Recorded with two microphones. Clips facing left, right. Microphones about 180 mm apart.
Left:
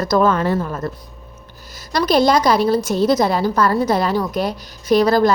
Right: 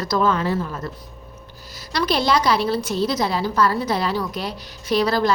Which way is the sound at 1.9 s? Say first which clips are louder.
Left 5 dB; 45° left (ahead or behind).